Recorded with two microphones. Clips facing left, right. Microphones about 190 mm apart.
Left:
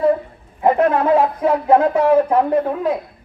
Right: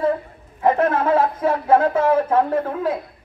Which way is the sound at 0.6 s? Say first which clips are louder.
Left 3 dB; 15° left (ahead or behind).